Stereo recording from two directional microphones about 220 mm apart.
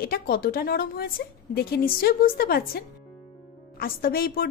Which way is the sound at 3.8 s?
40° left (ahead or behind).